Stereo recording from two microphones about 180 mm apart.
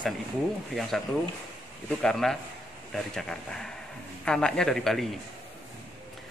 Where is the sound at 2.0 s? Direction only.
5° left (ahead or behind).